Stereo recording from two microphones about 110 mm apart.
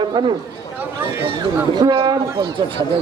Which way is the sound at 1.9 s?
45° right (ahead or behind).